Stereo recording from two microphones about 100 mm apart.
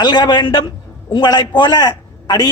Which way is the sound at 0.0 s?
45° left (ahead or behind).